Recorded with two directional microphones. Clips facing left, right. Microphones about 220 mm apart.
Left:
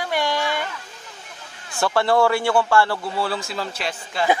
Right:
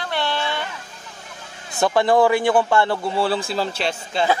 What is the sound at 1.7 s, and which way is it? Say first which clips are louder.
A man's voice: right 2 dB; 15° right (ahead or behind).